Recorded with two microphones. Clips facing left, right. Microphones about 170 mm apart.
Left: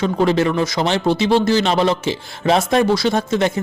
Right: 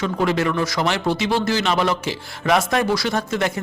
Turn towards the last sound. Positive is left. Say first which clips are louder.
# left 4 dB
turn(degrees=25)  # may be behind; listen again after turning